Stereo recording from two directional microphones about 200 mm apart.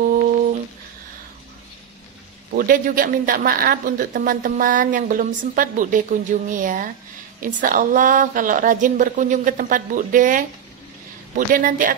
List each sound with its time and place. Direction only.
0.0 s humming: 45° right (ahead or behind)
2.5 s a woman's voice: 45° right (ahead or behind)